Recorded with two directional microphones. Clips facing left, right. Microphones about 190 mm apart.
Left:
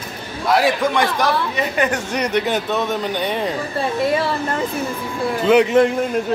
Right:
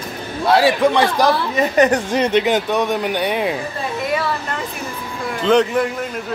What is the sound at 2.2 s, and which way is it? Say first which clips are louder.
Speech: right 1 dB; 20° right (ahead or behind).